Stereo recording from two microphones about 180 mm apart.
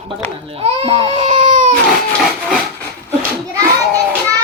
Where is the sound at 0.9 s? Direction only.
30° right (ahead or behind).